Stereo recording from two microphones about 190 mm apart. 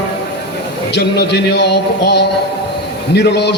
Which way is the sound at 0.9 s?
60° left (ahead or behind).